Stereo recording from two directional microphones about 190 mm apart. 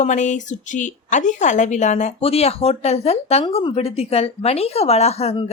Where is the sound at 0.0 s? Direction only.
40° left (ahead or behind).